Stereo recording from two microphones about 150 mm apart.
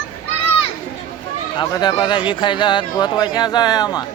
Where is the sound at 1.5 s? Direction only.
25° left (ahead or behind).